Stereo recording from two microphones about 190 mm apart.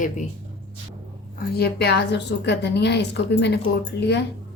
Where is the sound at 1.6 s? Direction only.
60° left (ahead or behind).